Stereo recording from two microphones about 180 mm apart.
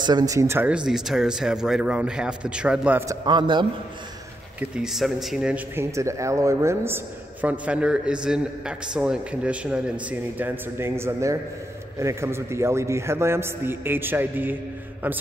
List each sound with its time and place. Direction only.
0.0 s speech: 20° right (ahead or behind)
3.3 s a man's voice: 25° right (ahead or behind)
4.6 s a man's voice: 5° right (ahead or behind)